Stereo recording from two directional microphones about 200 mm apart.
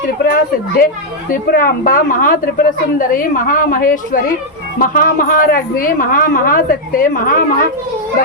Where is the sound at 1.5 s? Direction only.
45° left (ahead or behind).